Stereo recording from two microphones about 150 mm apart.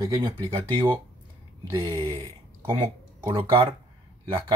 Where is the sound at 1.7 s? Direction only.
25° right (ahead or behind).